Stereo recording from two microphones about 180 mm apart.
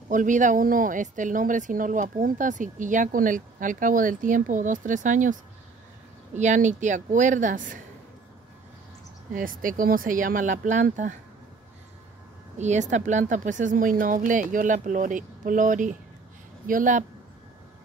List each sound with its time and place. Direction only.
0.1 s speech: 45° right (ahead or behind)
9.3 s speech: 50° right (ahead or behind)
12.5 s speech: 40° right (ahead or behind)